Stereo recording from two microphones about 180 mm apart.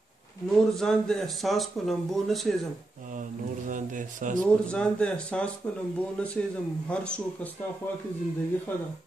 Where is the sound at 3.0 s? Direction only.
45° right (ahead or behind).